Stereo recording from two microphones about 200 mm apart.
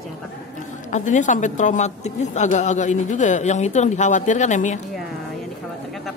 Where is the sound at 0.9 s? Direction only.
40° left (ahead or behind).